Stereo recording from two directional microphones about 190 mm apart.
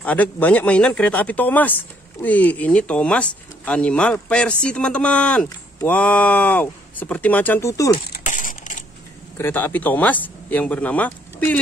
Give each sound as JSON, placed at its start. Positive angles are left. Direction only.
{"t": 0.0, "sound": "speech", "side_deg": 10}
{"t": 8.1, "sound": "a sound", "side_deg": 45}
{"t": 9.4, "sound": "speech", "side_deg": 10}